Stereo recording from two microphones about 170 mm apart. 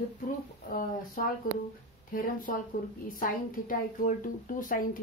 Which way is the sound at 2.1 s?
55° left (ahead or behind).